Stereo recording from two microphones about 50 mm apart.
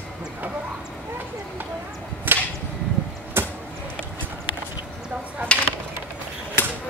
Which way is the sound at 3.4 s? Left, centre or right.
Right.